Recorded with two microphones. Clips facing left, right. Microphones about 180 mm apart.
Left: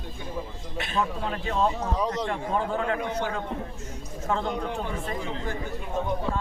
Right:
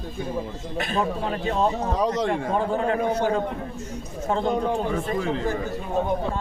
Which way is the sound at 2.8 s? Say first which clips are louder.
Right 6 dB; 35° right (ahead or behind).